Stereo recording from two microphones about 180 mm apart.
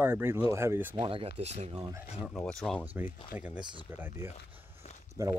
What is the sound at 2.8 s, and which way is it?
Speech, 10° right (ahead or behind).